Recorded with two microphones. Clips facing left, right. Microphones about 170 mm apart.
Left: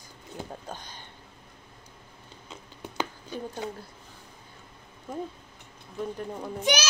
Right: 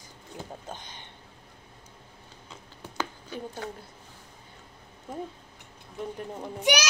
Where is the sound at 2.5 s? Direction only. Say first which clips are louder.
Left 2 dB; 15° left (ahead or behind).